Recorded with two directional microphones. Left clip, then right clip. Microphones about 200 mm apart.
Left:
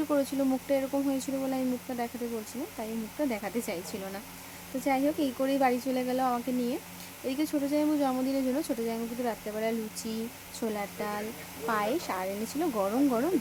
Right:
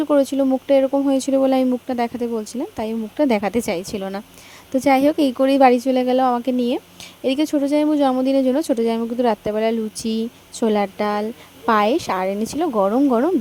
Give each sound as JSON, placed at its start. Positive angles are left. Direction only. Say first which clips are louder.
{"t": 0.1, "sound": "speech", "louder": "right 13 dB", "side_deg": -35}